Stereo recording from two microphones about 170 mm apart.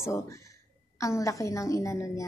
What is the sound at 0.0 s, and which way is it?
A woman's voice, 15° left (ahead or behind).